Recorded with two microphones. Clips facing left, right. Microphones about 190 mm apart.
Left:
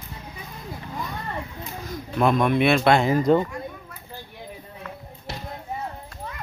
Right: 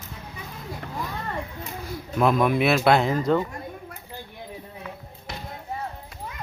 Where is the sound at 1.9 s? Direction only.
5° right (ahead or behind).